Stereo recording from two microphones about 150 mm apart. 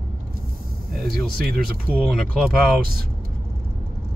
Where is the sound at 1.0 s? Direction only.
90° right.